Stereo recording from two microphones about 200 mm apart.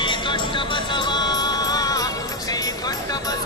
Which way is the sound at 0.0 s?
25° left (ahead or behind).